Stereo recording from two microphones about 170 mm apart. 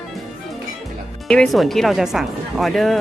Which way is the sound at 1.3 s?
5° left (ahead or behind).